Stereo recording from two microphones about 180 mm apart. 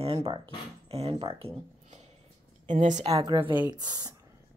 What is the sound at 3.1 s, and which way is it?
A woman's voice, 20° right (ahead or behind).